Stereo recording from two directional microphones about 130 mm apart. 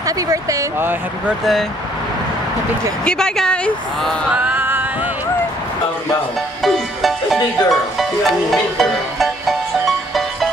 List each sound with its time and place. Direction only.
0.0 s speech: 25° right (ahead or behind)
1.4 s speech: centre (ahead or behind)
3.1 s speech: 5° left (ahead or behind)
4.3 s music: 15° right (ahead or behind)
6.6 s music: centre (ahead or behind)